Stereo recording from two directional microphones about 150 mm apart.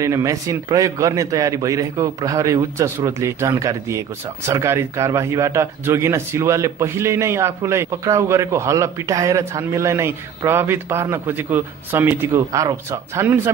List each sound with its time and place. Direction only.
0.0 s a man's voice: 20° right (ahead or behind)